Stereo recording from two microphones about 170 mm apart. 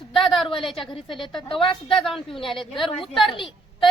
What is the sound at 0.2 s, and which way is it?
Speech, centre (ahead or behind).